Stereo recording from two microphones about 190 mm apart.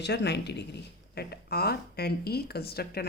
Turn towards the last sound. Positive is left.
turn(degrees=55)  # may be behind; listen again after turning